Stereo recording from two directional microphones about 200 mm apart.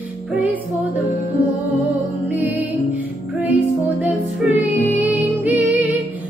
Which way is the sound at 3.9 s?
5° right (ahead or behind).